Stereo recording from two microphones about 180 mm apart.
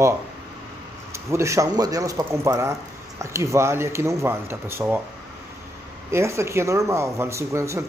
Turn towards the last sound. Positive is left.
turn(degrees=-15)  # may be behind; listen again after turning